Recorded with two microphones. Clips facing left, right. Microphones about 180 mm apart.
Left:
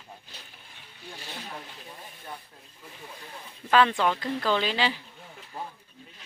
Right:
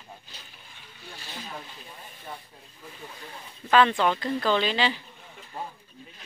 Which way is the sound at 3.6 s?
5° left (ahead or behind).